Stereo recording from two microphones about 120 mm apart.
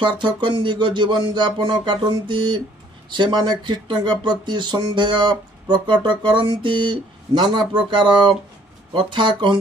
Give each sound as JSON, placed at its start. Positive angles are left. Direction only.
{"t": 0.0, "sound": "speech", "side_deg": -40}